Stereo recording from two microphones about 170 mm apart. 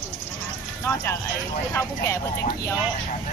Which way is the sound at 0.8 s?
15° left (ahead or behind).